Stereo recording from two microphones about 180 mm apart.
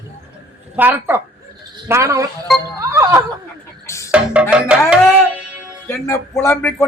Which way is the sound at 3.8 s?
15° left (ahead or behind).